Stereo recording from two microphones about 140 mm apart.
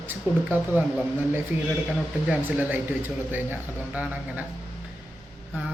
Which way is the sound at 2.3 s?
10° right (ahead or behind).